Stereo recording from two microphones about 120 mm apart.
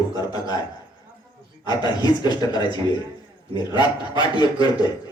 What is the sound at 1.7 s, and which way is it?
A man's voice, 35° left (ahead or behind).